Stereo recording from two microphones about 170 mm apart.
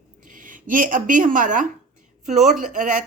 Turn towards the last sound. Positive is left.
turn(degrees=-50)  # may be behind; listen again after turning